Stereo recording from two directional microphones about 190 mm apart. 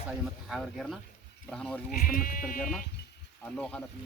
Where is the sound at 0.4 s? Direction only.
Centre (ahead or behind).